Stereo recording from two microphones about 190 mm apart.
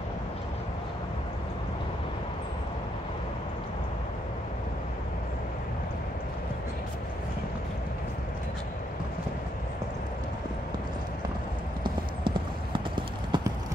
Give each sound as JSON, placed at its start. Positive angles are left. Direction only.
{"t": 11.8, "sound": "clip-clop", "side_deg": -25}